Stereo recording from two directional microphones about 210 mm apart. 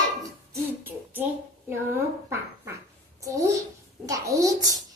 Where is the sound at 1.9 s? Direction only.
10° right (ahead or behind).